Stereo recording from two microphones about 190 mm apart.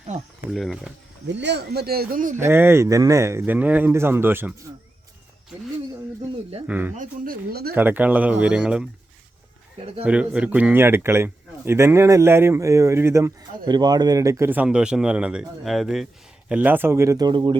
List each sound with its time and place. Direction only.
0.5 s speech: centre (ahead or behind)
1.3 s speech: 65° right (ahead or behind); by 2.4 s 45° right (ahead or behind)
2.4 s a man's voice: 10° right (ahead or behind)
6.7 s a man's voice: 10° right (ahead or behind)
6.9 s speech: 45° right (ahead or behind)
7.8 s a man's voice: 10° right (ahead or behind)
10.0 s a man's voice: 5° right (ahead or behind); by 17.6 s 25° right (ahead or behind)